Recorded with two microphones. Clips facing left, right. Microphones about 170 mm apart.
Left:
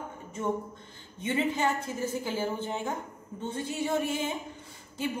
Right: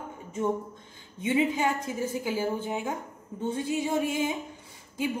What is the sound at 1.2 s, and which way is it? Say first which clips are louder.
A woman's voice: right 3 dB; 10° right (ahead or behind).